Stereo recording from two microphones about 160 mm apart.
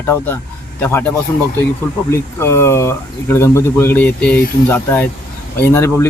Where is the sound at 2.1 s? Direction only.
15° left (ahead or behind).